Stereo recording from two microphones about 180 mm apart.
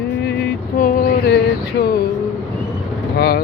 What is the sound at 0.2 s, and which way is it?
Vehicle, 65° left (ahead or behind).